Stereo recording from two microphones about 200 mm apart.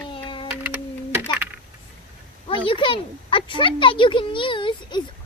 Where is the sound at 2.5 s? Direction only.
25° left (ahead or behind).